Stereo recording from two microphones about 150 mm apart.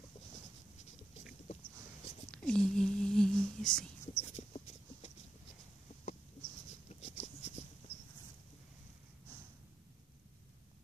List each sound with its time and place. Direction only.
2.3 s whispering: 5° left (ahead or behind)
4.1 s a sound: 50° left (ahead or behind)
6.9 s writing: 50° left (ahead or behind)